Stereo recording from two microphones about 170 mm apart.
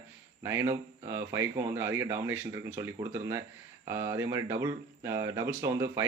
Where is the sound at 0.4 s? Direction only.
15° right (ahead or behind).